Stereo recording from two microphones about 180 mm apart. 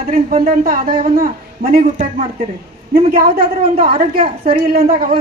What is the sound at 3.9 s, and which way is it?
Speech, 30° right (ahead or behind).